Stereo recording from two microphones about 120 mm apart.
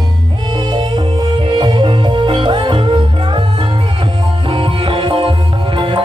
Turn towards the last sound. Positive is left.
turn(degrees=-45)  # may be behind; listen again after turning